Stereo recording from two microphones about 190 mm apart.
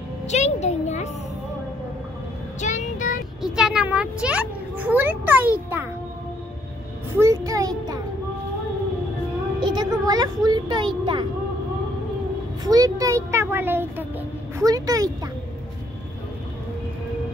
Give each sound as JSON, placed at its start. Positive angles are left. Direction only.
{"t": 0.3, "sound": "a child's voice", "side_deg": 35}
{"t": 2.6, "sound": "child singing", "side_deg": 40}
{"t": 3.4, "sound": "a child's voice", "side_deg": -5}
{"t": 7.2, "sound": "a child's voice", "side_deg": -15}
{"t": 9.6, "sound": "speech", "side_deg": -25}
{"t": 12.6, "sound": "a child's voice", "side_deg": -20}